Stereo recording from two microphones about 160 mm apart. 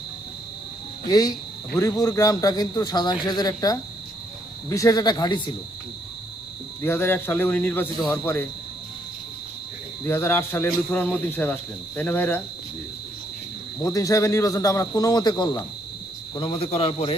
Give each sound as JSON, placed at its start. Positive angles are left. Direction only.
{"t": 1.0, "sound": "speech", "side_deg": 25}
{"t": 6.8, "sound": "speech", "side_deg": 15}
{"t": 10.0, "sound": "speech", "side_deg": 15}
{"t": 13.9, "sound": "a man's voice", "side_deg": 20}